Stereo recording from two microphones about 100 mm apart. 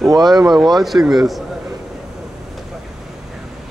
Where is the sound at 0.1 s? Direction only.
40° right (ahead or behind).